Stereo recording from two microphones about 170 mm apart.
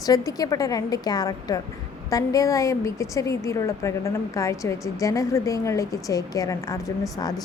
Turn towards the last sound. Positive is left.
turn(degrees=20)  # may be behind; listen again after turning